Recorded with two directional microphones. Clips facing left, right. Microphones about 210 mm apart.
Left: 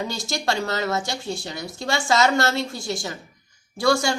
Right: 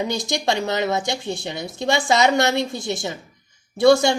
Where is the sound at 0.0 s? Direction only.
20° right (ahead or behind).